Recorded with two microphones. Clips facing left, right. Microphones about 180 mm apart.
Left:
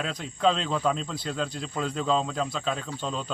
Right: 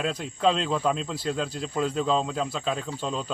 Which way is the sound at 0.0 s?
5° right (ahead or behind).